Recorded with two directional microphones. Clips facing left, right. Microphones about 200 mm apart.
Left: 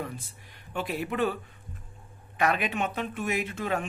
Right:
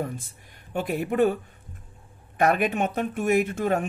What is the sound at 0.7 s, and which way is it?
Speech, 45° right (ahead or behind).